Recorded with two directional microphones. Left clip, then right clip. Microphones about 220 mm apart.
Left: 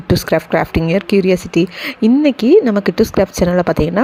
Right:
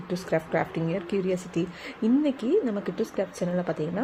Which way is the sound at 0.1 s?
35° left (ahead or behind).